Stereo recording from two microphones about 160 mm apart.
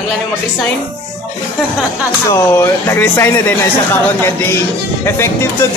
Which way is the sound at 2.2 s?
20° left (ahead or behind).